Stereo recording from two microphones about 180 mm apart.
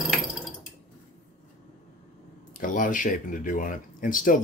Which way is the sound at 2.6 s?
50° left (ahead or behind).